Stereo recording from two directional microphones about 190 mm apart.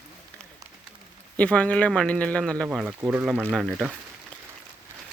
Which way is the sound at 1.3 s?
5° left (ahead or behind).